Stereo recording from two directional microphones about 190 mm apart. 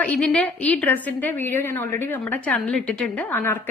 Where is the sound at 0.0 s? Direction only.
5° left (ahead or behind).